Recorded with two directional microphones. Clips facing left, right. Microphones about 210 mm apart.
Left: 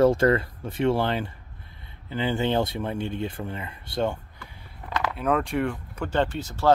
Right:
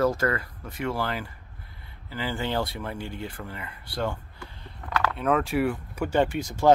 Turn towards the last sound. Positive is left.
turn(degrees=-10)  # may be behind; listen again after turning